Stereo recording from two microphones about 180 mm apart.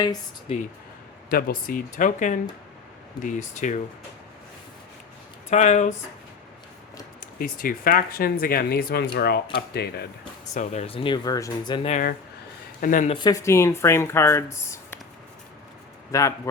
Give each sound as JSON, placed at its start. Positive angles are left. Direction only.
{"t": 0.4, "sound": "speech", "side_deg": 40}
{"t": 1.3, "sound": "speech", "side_deg": 55}
{"t": 5.5, "sound": "speech", "side_deg": 40}
{"t": 7.3, "sound": "speech", "side_deg": 50}
{"t": 10.5, "sound": "speech", "side_deg": 40}
{"t": 11.9, "sound": "speech", "side_deg": 45}
{"t": 13.1, "sound": "speech", "side_deg": 20}
{"t": 16.1, "sound": "speech", "side_deg": 15}